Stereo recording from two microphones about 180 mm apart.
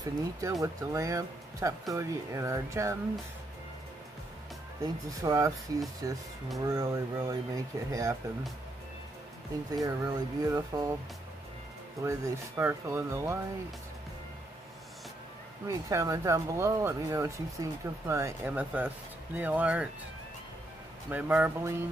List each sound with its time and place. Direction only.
0.4 s speech: 20° right (ahead or behind)
4.8 s speech: 20° right (ahead or behind)
9.8 s speech: 20° right (ahead or behind)
12.0 s speech: 15° right (ahead or behind)
15.6 s speech: 20° right (ahead or behind)
21.1 s speech: 10° right (ahead or behind)